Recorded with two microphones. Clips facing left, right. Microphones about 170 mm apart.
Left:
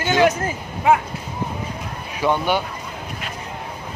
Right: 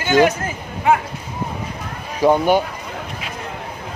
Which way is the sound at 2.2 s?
40° right (ahead or behind).